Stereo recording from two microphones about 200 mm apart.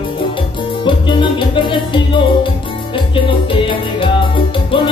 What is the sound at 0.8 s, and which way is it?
Music, 25° left (ahead or behind).